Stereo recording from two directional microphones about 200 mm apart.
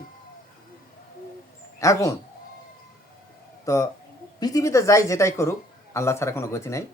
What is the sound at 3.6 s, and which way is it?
Speech, 15° left (ahead or behind).